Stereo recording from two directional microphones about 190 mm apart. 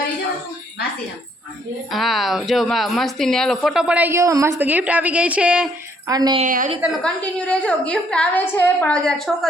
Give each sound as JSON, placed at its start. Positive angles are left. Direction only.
{"t": 1.9, "sound": "a woman's voice", "side_deg": 0}
{"t": 6.1, "sound": "a woman's voice", "side_deg": -20}
{"t": 6.4, "sound": "a woman's voice", "side_deg": -40}
{"t": 7.0, "sound": "a woman's voice", "side_deg": 5}